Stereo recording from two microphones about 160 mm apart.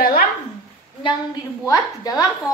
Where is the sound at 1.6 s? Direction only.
20° left (ahead or behind).